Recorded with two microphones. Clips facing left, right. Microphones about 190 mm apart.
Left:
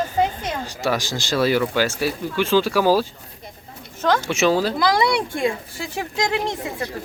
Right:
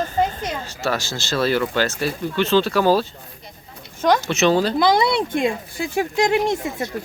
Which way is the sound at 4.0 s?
15° right (ahead or behind).